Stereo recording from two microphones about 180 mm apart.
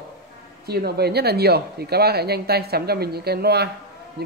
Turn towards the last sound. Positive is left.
turn(degrees=-60)  # may be behind; listen again after turning